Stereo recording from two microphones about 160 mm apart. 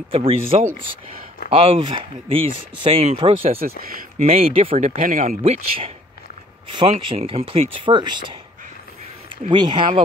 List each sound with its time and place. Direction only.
0.1 s speech: 35° right (ahead or behind); by 5.4 s 55° right (ahead or behind)
5.4 s speech: 40° right (ahead or behind)
7.1 s speech: 35° right (ahead or behind)
9.5 s speech: 30° right (ahead or behind)